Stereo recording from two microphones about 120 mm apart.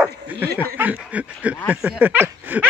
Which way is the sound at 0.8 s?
10° right (ahead or behind).